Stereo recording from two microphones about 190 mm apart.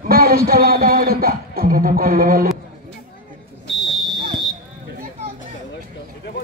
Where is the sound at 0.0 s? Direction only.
50° right (ahead or behind).